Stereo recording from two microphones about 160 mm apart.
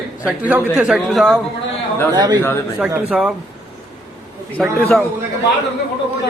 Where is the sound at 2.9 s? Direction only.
5° right (ahead or behind).